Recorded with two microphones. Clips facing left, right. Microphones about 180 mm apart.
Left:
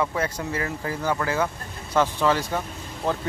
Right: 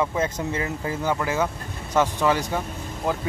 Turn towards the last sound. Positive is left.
turn(degrees=-10)  # may be behind; listen again after turning